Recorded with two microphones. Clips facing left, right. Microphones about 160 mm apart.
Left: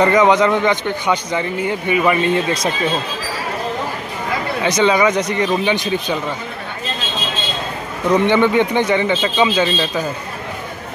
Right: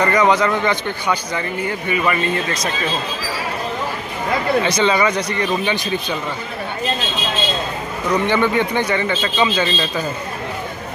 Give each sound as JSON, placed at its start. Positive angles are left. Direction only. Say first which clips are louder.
{"t": 0.0, "sound": "a man's voice", "louder": "left 3 dB", "side_deg": 20}
{"t": 4.6, "sound": "a man's voice", "louder": "left 2 dB", "side_deg": 15}
{"t": 8.1, "sound": "a man's voice", "louder": "left 4 dB", "side_deg": 20}